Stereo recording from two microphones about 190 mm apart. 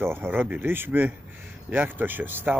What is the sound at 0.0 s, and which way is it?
Speech, 10° right (ahead or behind).